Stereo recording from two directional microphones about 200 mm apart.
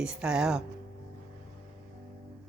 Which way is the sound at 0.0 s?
5° right (ahead or behind).